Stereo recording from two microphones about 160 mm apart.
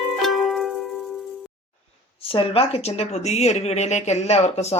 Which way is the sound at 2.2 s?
35° left (ahead or behind).